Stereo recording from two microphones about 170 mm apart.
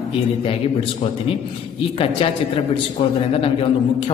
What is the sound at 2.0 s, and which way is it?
A man's voice, 30° left (ahead or behind).